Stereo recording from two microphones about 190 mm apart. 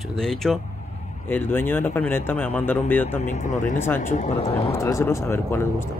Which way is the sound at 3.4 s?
40° left (ahead or behind).